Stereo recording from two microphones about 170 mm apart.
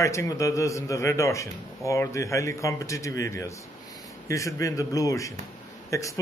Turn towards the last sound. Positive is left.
turn(degrees=20)  # may be behind; listen again after turning